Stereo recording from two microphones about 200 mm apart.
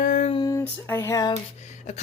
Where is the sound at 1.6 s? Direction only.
35° left (ahead or behind).